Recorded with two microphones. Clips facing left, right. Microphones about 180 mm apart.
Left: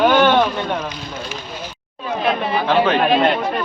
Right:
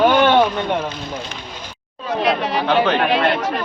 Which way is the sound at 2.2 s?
85° right.